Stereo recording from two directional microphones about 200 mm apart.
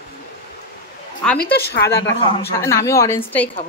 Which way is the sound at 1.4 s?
55° left (ahead or behind).